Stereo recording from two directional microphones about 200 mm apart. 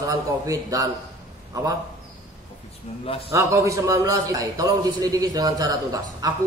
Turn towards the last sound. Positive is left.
turn(degrees=-20)  # may be behind; listen again after turning